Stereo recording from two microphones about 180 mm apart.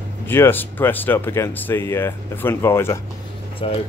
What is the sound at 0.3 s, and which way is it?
Speech, 10° left (ahead or behind).